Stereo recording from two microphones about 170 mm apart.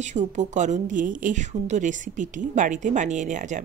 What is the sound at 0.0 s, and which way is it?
A woman's voice, 45° right (ahead or behind).